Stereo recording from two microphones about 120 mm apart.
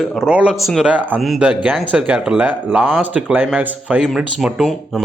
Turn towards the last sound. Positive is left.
turn(degrees=0)  # may be behind; listen again after turning